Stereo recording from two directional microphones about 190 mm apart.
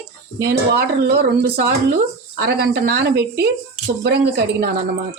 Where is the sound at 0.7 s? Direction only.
55° right (ahead or behind).